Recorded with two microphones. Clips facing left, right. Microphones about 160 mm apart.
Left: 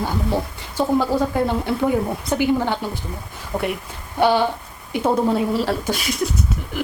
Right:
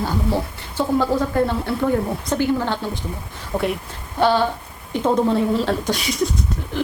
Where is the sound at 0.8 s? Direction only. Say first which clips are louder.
Even; 15° left (ahead or behind).